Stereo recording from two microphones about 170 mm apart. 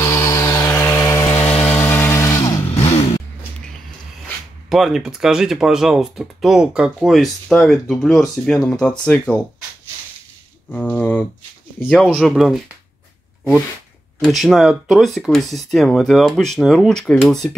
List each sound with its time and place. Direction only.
0.0 s a sound: 15° left (ahead or behind)
2.7 s vehicle: 35° left (ahead or behind)
4.6 s speech: centre (ahead or behind)
10.7 s speech: 10° left (ahead or behind)
12.1 s speech: 5° right (ahead or behind)
14.2 s speech: centre (ahead or behind)